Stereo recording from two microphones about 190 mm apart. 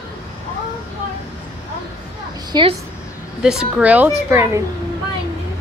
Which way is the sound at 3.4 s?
5° right (ahead or behind).